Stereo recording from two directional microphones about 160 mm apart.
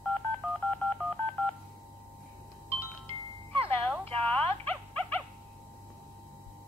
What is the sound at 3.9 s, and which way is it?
Dog, 10° left (ahead or behind).